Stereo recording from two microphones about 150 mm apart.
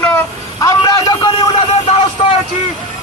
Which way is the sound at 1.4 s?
40° left (ahead or behind).